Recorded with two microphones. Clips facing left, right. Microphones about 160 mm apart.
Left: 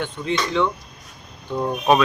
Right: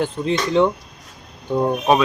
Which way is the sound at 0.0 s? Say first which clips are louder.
Right 4 dB; 35° right (ahead or behind).